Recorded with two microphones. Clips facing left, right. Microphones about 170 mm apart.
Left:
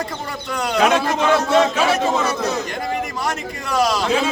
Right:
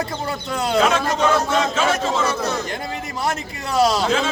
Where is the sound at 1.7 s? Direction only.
15° left (ahead or behind).